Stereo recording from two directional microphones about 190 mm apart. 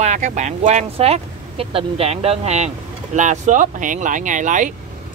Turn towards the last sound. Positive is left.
turn(degrees=-40)  # may be behind; listen again after turning